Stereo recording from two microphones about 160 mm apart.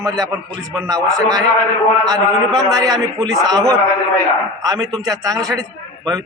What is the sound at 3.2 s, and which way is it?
Speech, 25° right (ahead or behind).